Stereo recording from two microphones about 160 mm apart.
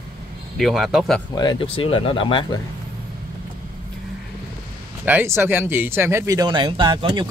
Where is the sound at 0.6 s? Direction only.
Centre (ahead or behind).